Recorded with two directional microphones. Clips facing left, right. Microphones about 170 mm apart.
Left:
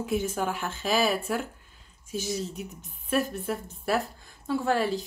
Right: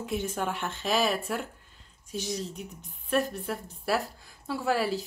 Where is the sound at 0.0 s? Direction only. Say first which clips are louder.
Left 3 dB; 5° left (ahead or behind).